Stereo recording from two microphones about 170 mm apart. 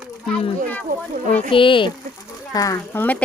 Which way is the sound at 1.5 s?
30° left (ahead or behind).